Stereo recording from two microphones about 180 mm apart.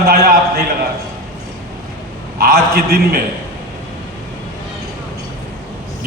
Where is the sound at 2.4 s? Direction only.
55° right (ahead or behind).